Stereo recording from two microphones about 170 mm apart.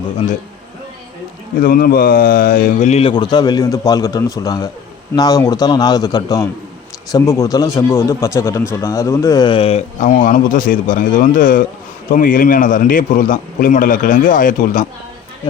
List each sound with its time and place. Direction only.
1.6 s a man's voice: 60° left (ahead or behind)